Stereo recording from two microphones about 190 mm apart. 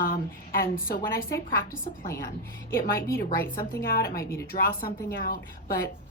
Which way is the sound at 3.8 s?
50° left (ahead or behind).